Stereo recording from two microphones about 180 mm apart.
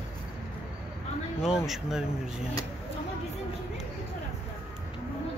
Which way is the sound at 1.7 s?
Centre (ahead or behind).